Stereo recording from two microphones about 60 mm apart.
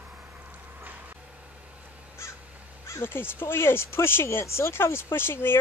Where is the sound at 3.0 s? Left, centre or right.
Left.